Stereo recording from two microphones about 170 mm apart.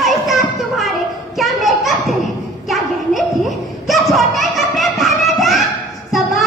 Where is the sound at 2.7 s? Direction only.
Centre (ahead or behind).